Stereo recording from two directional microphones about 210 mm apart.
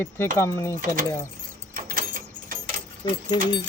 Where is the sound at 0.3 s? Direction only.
15° left (ahead or behind).